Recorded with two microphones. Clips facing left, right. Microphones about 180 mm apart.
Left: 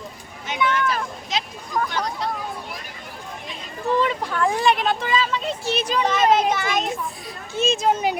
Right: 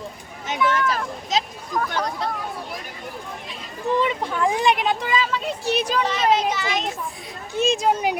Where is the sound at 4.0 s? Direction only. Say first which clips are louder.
Right 1 dB; 20° right (ahead or behind).